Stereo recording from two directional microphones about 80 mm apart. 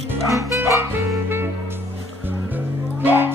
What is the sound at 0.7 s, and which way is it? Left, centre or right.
Saxophone, right.